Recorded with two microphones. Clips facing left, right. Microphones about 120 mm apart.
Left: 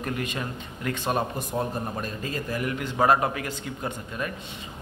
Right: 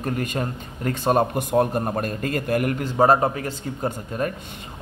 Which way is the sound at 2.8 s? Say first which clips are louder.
Right 3 dB; 30° right (ahead or behind).